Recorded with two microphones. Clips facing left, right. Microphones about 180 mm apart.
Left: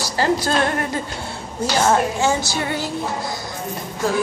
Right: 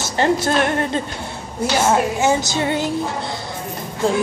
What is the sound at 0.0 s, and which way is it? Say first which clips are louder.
A woman's voice: right 2 dB; 25° right (ahead or behind).